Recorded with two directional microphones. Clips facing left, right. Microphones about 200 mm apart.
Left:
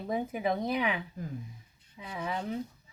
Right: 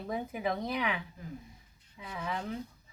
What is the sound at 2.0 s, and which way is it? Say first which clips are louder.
Speech: left 2 dB; 20° left (ahead or behind).